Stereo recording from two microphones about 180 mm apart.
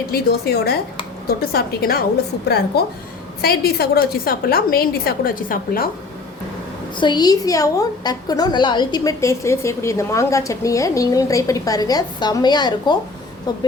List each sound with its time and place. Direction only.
0.1 s a woman's voice: 60° left (ahead or behind)
6.9 s a woman's voice: 25° left (ahead or behind)